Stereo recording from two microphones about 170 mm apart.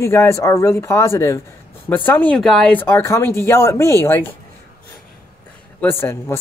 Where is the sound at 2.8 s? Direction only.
15° left (ahead or behind).